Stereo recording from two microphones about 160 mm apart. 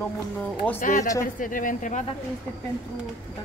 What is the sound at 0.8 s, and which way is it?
Speech, 55° left (ahead or behind).